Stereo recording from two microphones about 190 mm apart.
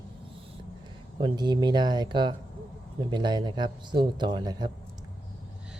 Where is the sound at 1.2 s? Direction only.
25° right (ahead or behind).